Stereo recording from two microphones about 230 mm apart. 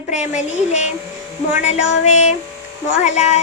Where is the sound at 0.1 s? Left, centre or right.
Left.